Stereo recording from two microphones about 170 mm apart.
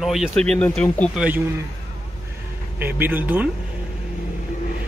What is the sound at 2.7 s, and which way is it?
Speech, 10° right (ahead or behind).